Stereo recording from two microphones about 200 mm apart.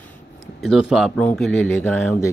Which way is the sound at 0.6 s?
Centre (ahead or behind).